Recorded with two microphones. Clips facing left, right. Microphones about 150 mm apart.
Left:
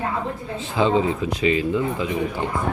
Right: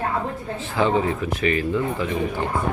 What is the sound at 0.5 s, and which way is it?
Speech, 15° left (ahead or behind).